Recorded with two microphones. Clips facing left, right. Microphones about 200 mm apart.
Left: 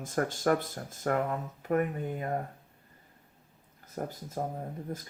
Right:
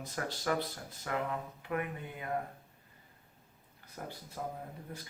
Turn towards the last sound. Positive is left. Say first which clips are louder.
# left 7 dB
turn(degrees=45)  # may be behind; listen again after turning